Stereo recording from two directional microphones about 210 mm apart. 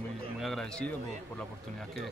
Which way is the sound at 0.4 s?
Centre (ahead or behind).